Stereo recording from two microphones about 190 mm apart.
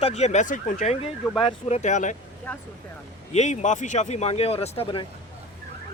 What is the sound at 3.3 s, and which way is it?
Speech, 40° left (ahead or behind).